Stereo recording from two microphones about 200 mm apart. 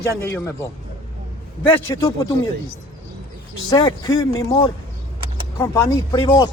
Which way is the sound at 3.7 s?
20° left (ahead or behind).